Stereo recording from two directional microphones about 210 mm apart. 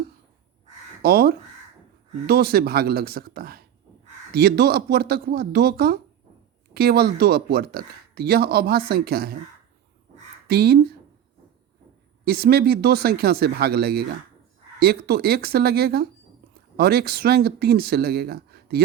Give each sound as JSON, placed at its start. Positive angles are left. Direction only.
{"t": 1.0, "sound": "speech", "side_deg": -45}
{"t": 10.5, "sound": "speech", "side_deg": -50}
{"t": 12.2, "sound": "speech", "side_deg": -50}